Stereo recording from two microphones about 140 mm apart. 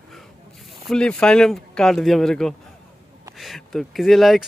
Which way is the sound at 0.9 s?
5° left (ahead or behind).